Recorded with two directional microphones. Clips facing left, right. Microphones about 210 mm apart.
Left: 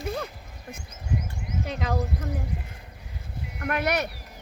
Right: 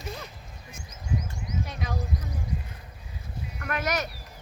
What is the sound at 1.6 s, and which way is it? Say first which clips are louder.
Speech: left 6 dB; 65° left (ahead or behind).